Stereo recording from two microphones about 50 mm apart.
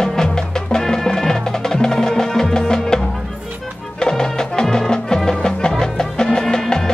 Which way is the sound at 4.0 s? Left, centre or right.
Centre.